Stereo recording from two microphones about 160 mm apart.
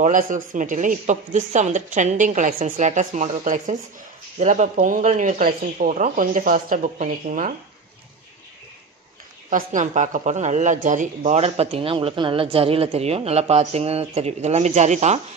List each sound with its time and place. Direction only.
0.0 s speech: 55° right (ahead or behind)
9.5 s speech: 55° right (ahead or behind)